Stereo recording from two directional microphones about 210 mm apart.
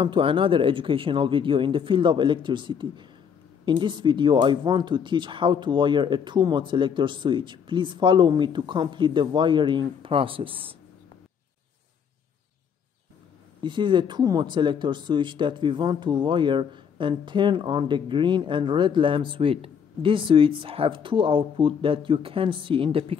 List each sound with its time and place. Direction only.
0.0 s speech: 25° right (ahead or behind)
13.6 s speech: 20° right (ahead or behind)